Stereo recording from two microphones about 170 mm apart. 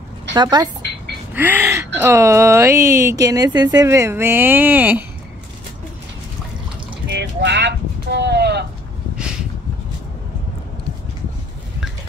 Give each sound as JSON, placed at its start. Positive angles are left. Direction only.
{"t": 0.3, "sound": "speech", "side_deg": -25}
{"t": 1.3, "sound": "speech", "side_deg": -10}
{"t": 7.1, "sound": "a sound", "side_deg": -85}